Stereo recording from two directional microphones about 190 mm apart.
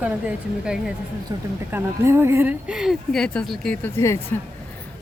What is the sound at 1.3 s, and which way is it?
A woman's voice, 15° right (ahead or behind).